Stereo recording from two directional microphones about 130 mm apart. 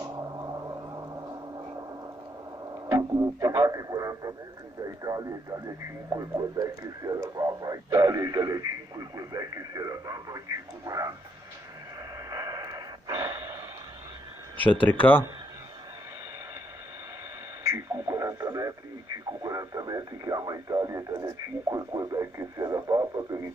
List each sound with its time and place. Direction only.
0.0 s a sound: 25° right (ahead or behind)
2.9 s speech: 25° right (ahead or behind)
12.3 s snort: 25° right (ahead or behind)
14.6 s speech: 10° left (ahead or behind)
17.6 s radio: 20° right (ahead or behind)
19.4 s speech: 25° right (ahead or behind)